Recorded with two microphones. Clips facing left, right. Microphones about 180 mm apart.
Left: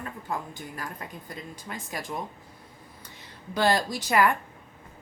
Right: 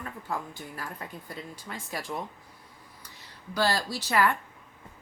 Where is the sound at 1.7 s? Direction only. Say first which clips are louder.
Left 1 dB; 20° left (ahead or behind).